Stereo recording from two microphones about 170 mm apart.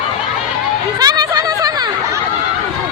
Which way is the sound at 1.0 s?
20° right (ahead or behind).